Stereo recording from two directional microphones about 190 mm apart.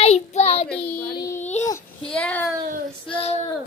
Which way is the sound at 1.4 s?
35° left (ahead or behind).